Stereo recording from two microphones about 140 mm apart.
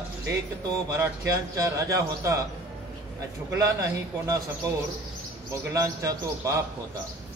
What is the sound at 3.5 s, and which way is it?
Speech, 25° right (ahead or behind).